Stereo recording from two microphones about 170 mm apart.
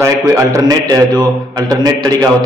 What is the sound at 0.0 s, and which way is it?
A man's voice, 20° right (ahead or behind).